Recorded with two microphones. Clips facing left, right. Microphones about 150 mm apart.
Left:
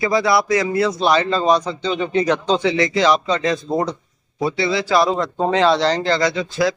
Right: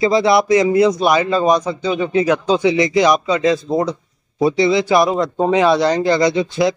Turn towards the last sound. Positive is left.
turn(degrees=-20)  # may be behind; listen again after turning